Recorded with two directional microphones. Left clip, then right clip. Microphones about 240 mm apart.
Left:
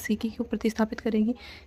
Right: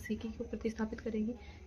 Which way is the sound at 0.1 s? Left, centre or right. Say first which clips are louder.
Left 8 dB; left.